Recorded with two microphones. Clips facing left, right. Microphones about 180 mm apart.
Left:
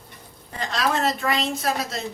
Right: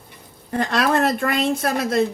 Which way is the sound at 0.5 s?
55° right (ahead or behind).